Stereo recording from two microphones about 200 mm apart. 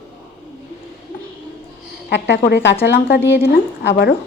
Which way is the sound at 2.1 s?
60° left (ahead or behind).